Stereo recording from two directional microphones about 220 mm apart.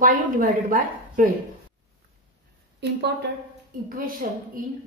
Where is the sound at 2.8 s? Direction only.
50° right (ahead or behind).